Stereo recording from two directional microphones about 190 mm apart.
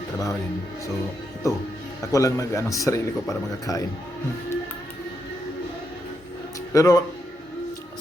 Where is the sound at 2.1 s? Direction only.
15° left (ahead or behind).